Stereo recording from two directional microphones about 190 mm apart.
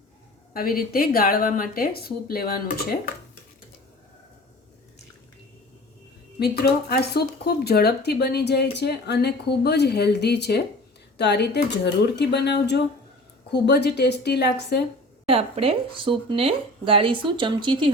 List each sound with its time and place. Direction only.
0.5 s speech: 50° left (ahead or behind)
6.4 s speech: 55° left (ahead or behind)
15.3 s speech: 30° right (ahead or behind)